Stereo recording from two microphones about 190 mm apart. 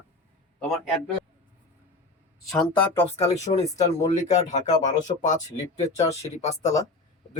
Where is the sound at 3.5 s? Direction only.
40° left (ahead or behind).